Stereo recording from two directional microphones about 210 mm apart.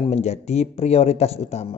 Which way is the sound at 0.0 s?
30° left (ahead or behind).